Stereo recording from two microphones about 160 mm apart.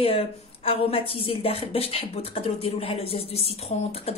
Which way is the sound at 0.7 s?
35° left (ahead or behind).